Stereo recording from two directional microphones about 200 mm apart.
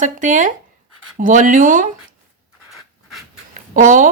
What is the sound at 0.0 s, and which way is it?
A woman's voice, 40° right (ahead or behind).